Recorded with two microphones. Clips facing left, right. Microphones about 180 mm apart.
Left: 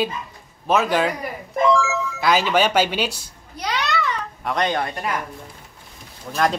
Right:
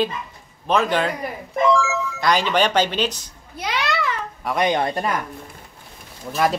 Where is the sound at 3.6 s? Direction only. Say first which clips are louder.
Right 1 dB; 5° right (ahead or behind).